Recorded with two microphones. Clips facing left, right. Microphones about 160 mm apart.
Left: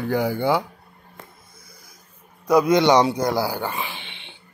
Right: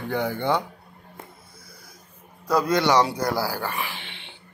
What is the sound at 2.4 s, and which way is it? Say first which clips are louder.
Speech: left 5 dB; 15° left (ahead or behind).